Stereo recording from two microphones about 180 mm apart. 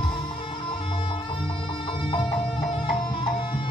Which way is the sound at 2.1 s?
25° left (ahead or behind).